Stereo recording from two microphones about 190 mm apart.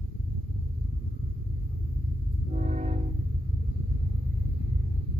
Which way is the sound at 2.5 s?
35° right (ahead or behind).